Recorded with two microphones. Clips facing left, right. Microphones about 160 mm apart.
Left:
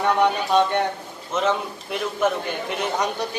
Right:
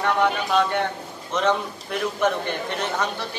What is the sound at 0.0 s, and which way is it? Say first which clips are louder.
Speech: left 2 dB; 20° left (ahead or behind).